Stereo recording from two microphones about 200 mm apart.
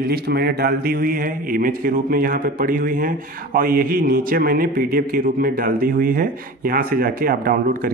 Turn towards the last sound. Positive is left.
turn(degrees=-45)  # may be behind; listen again after turning